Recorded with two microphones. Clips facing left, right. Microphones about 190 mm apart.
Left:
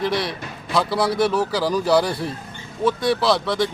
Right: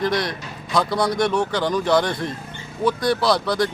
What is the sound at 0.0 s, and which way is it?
A man's voice, 5° left (ahead or behind).